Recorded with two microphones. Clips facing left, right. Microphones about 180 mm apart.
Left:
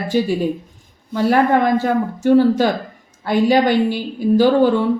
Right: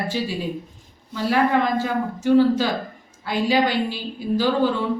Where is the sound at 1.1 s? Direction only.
50° left (ahead or behind).